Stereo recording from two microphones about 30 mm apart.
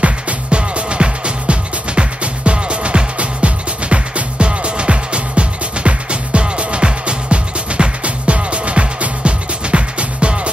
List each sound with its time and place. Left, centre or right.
0.0 s music: right
0.6 s music: right